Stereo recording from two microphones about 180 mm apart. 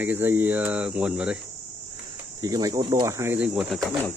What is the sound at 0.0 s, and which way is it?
Speech, 10° right (ahead or behind).